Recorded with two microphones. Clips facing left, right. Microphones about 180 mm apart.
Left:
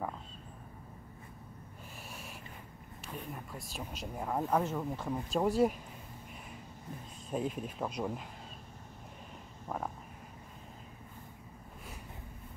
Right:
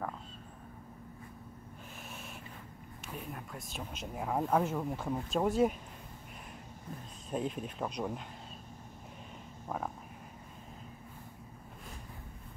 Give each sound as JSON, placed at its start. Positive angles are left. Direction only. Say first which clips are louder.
{"t": 3.1, "sound": "speech", "louder": "even", "side_deg": -5}
{"t": 7.2, "sound": "speech", "louder": "even", "side_deg": 0}
{"t": 9.7, "sound": "speech", "louder": "even", "side_deg": 0}